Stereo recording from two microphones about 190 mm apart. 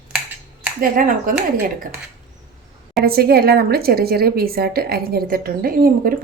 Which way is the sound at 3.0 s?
55° right (ahead or behind).